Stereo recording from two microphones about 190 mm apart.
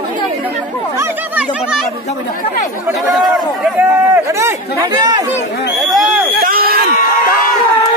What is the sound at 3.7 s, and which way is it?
Speech, 10° right (ahead or behind).